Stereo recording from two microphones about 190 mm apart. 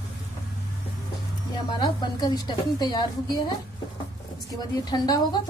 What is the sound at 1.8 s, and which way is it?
A woman's voice, 20° left (ahead or behind).